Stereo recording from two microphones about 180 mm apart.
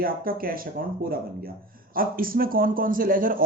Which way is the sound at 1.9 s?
55° right (ahead or behind).